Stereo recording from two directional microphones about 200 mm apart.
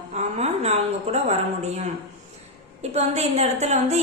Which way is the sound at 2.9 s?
30° right (ahead or behind).